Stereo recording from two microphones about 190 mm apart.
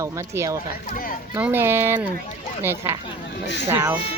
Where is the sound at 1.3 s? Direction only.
10° right (ahead or behind).